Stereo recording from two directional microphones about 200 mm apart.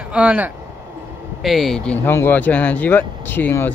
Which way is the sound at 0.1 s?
5° right (ahead or behind).